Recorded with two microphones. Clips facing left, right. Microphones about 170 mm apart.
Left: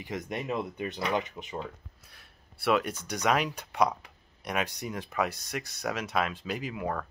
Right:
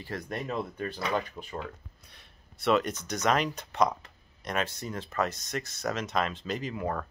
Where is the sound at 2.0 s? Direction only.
5° left (ahead or behind).